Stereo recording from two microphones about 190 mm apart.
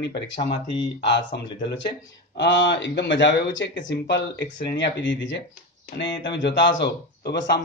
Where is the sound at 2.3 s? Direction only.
65° left (ahead or behind).